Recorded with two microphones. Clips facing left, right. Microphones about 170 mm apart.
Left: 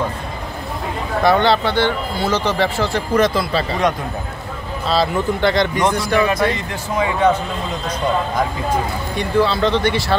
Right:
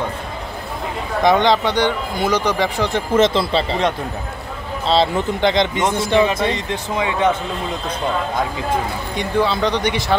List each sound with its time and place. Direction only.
1.2 s speech: 15° right (ahead or behind)
9.1 s speech: 15° right (ahead or behind)